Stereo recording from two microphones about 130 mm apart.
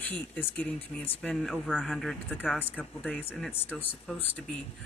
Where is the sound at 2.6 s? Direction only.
15° left (ahead or behind).